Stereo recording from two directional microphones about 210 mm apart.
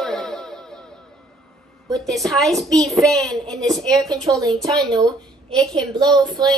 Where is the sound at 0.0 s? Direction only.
Centre (ahead or behind).